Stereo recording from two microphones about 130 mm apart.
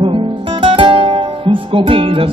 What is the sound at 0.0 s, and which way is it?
Music, 40° right (ahead or behind).